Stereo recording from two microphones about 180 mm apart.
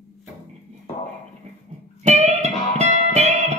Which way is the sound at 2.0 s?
40° right (ahead or behind).